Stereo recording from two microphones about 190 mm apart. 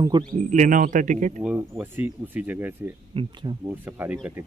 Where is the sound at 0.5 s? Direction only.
40° right (ahead or behind).